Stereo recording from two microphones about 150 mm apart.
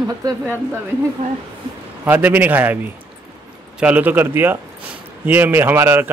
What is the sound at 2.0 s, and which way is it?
Speech, 15° right (ahead or behind).